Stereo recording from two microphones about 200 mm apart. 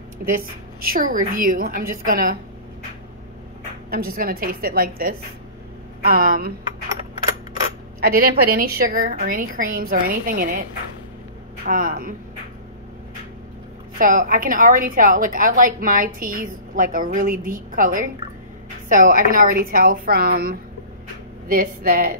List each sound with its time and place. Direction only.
0.8 s a woman's voice: 45° right (ahead or behind)
3.9 s a woman's voice: 50° right (ahead or behind)
8.0 s a woman's voice: 45° right (ahead or behind)
11.6 s a woman's voice: 45° right (ahead or behind)
13.9 s a woman's voice: 45° right (ahead or behind)